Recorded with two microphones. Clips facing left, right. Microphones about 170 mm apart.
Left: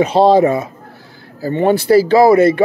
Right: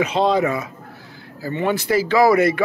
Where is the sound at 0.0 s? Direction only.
30° left (ahead or behind).